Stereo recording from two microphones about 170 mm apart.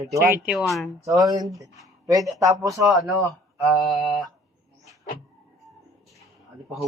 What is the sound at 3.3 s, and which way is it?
Mantra, centre (ahead or behind).